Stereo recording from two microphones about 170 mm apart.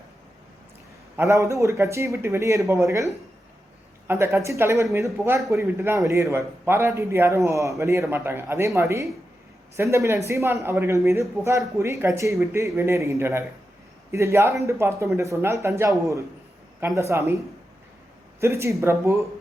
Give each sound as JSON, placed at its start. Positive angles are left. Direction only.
{"t": 1.1, "sound": "a man's voice", "side_deg": -15}